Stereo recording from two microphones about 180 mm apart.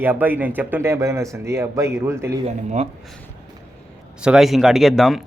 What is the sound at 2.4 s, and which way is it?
Speech, 35° right (ahead or behind).